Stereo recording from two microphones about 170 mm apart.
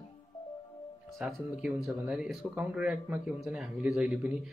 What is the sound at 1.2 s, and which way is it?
Speech, 5° right (ahead or behind).